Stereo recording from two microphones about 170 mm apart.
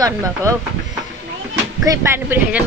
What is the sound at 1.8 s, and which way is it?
Speech, 15° right (ahead or behind).